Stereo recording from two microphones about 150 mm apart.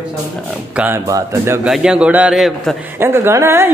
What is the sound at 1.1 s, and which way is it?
Speech, 20° right (ahead or behind).